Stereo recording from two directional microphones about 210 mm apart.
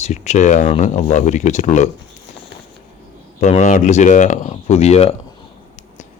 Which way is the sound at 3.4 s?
35° left (ahead or behind).